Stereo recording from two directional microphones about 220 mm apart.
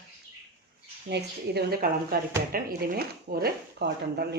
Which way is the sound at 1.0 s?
45° right (ahead or behind).